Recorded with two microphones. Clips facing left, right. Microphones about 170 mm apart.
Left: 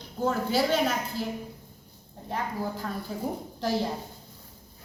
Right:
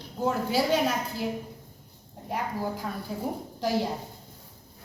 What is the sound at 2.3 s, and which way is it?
Speech, 10° right (ahead or behind).